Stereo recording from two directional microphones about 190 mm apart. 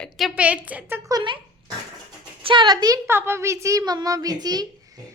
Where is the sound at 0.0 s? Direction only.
Centre (ahead or behind).